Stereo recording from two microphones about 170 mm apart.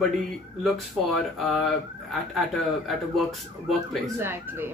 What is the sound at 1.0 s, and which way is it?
Speech, centre (ahead or behind).